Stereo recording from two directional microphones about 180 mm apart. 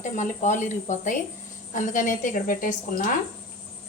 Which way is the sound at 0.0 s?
45° left (ahead or behind).